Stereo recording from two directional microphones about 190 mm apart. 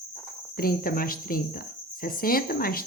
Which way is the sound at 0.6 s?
50° left (ahead or behind).